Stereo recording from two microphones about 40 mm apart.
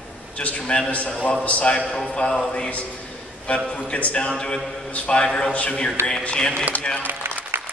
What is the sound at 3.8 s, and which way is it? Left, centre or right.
A man's voice, left.